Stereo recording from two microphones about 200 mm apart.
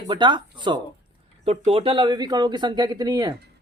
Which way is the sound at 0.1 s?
25° right (ahead or behind).